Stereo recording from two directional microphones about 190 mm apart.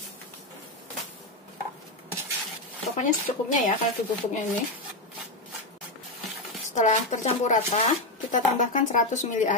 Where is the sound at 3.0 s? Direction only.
40° left (ahead or behind).